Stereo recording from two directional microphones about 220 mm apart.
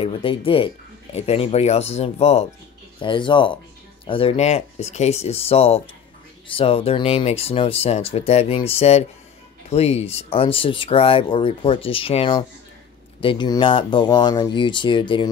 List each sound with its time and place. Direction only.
0.0 s speech: 25° left (ahead or behind)